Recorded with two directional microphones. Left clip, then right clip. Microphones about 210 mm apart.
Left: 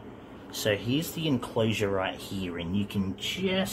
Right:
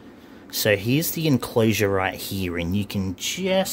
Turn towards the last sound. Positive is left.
turn(degrees=-60)  # may be behind; listen again after turning